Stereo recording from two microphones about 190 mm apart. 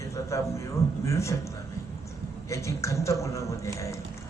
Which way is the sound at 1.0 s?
15° left (ahead or behind).